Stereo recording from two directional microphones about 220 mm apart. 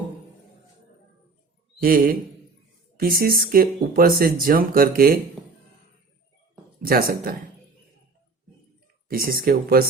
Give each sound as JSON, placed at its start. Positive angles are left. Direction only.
{"t": 1.8, "sound": "speech", "side_deg": -40}
{"t": 6.8, "sound": "speech", "side_deg": -40}
{"t": 9.0, "sound": "speech", "side_deg": -40}